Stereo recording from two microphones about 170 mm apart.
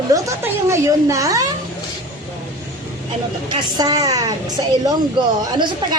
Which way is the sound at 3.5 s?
25° right (ahead or behind).